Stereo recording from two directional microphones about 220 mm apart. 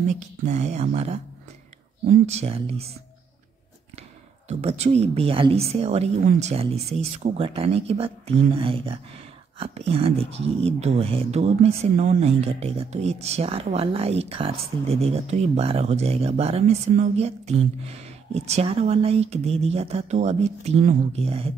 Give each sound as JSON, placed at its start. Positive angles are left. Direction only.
{"t": 0.5, "sound": "speech", "side_deg": -30}
{"t": 4.5, "sound": "speech", "side_deg": -30}